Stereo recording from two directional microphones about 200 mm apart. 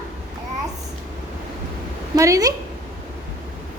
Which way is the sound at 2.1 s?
15° right (ahead or behind).